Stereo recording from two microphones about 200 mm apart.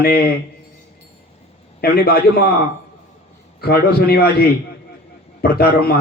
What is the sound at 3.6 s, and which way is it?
Speech, 50° left (ahead or behind).